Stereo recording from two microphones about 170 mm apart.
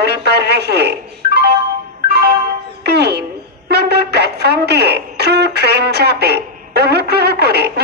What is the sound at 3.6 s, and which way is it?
Speech, 75° right (ahead or behind).